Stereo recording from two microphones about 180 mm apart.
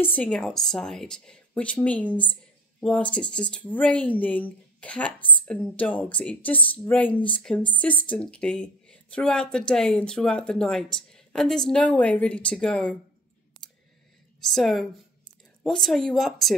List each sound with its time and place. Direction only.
0.0 s a woman's voice: 10° left (ahead or behind)
14.4 s a woman's voice: centre (ahead or behind)